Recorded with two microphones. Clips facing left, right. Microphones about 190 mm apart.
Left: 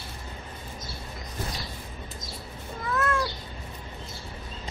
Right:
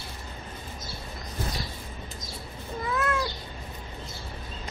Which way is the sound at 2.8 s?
10° right (ahead or behind).